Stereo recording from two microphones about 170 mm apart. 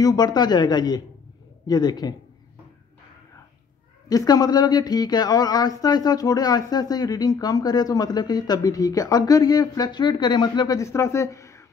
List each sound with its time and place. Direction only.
0.0 s speech: 25° left (ahead or behind)
4.1 s speech: 20° left (ahead or behind)